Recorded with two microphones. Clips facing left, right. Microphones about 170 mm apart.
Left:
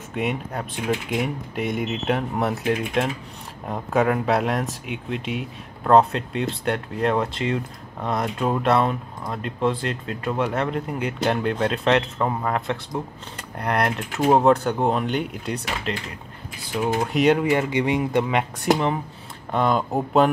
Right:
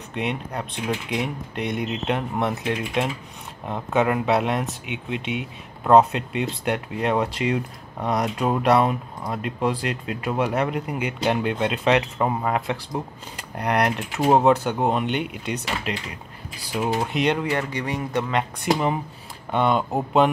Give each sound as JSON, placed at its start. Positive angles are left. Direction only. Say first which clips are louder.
{"t": 0.1, "sound": "speech", "louder": "left 1 dB", "side_deg": 5}
{"t": 15.9, "sound": "speech", "louder": "left 1 dB", "side_deg": -10}
{"t": 19.5, "sound": "speech", "louder": "even", "side_deg": 0}